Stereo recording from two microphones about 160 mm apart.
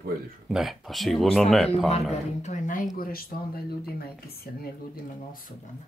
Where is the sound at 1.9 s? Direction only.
40° left (ahead or behind).